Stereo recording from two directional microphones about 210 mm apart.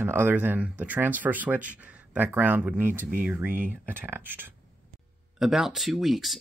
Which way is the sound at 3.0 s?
40° right (ahead or behind).